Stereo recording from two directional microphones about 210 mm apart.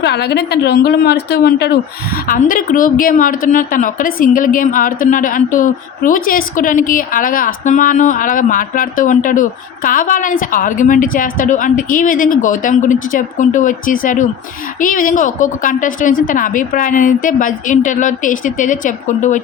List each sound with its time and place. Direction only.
0.0 s speech: 50° left (ahead or behind)